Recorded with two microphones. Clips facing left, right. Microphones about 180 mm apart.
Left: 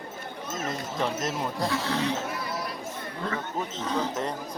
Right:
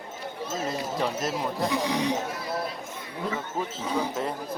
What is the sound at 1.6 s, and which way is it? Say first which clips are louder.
Speech: right 2 dB; 15° right (ahead or behind).